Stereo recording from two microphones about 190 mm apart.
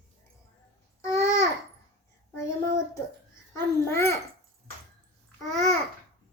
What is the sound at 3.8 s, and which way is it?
Speech, 15° left (ahead or behind).